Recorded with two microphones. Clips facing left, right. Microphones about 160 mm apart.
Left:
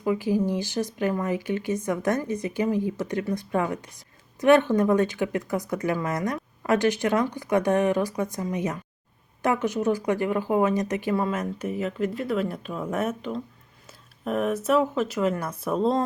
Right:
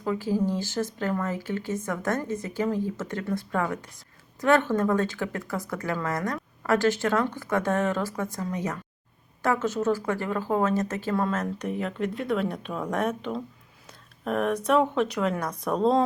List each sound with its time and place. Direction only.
0.0 s speech: 15° left (ahead or behind)